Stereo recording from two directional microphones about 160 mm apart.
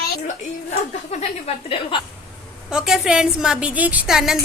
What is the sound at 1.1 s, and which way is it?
Speech, 40° left (ahead or behind).